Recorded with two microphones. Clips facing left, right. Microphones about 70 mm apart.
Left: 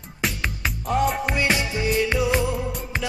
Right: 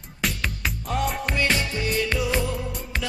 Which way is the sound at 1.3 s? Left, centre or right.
Centre.